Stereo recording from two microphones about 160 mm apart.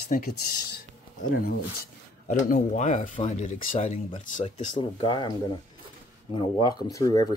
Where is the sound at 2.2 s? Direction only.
55° left (ahead or behind).